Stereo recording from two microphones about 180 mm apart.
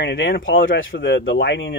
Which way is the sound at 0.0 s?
80° left.